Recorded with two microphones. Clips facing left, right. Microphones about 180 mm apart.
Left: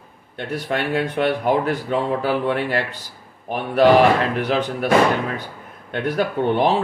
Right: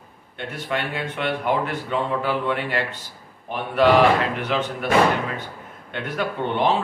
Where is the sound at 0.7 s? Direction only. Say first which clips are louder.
Left 5 dB; 40° left (ahead or behind).